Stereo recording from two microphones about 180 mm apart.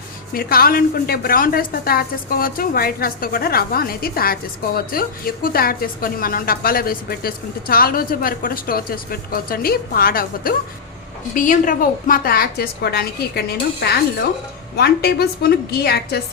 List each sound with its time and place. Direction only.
0.3 s a woman's voice: 55° left (ahead or behind)
14.8 s a woman's voice: 60° left (ahead or behind)